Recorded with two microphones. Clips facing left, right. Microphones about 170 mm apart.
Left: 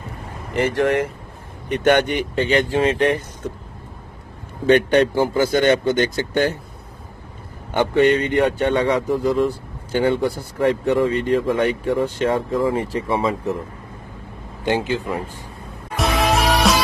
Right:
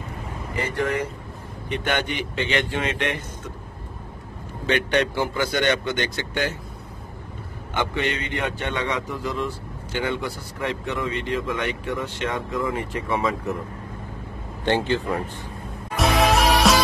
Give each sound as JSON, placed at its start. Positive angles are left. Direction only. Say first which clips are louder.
{"t": 0.6, "sound": "speech", "louder": "left 7 dB", "side_deg": 90}
{"t": 1.7, "sound": "speech", "louder": "left 9 dB", "side_deg": 45}
{"t": 5.2, "sound": "speech", "louder": "left 6 dB", "side_deg": 35}
{"t": 7.7, "sound": "speech", "louder": "left 10 dB", "side_deg": 45}
{"t": 14.6, "sound": "a man's voice", "louder": "left 1 dB", "side_deg": 10}
{"t": 16.0, "sound": "music", "louder": "even", "side_deg": 0}